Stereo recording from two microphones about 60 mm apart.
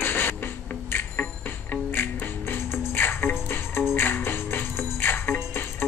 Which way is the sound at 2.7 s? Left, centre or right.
Left.